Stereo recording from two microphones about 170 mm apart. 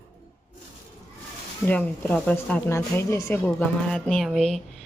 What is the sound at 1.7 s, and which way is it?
A woman's voice, 10° left (ahead or behind).